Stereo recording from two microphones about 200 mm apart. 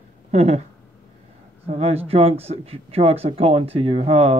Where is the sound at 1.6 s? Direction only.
30° right (ahead or behind).